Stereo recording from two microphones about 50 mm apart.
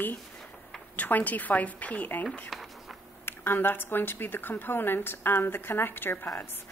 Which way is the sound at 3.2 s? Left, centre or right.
Left.